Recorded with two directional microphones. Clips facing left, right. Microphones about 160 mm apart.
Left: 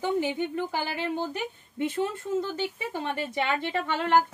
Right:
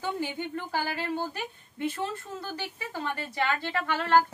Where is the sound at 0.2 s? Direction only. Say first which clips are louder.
Left 5 dB; 20° left (ahead or behind).